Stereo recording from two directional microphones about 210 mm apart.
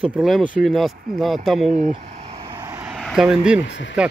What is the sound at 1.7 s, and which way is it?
Vehicle, 35° right (ahead or behind).